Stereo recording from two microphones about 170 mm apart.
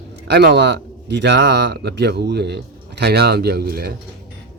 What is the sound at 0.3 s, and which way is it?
Speech, 75° right (ahead or behind).